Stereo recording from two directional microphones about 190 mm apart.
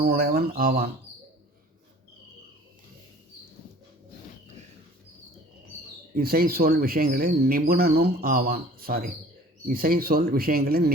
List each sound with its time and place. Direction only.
0.0 s speech: 55° right (ahead or behind)
6.1 s speech: 50° right (ahead or behind)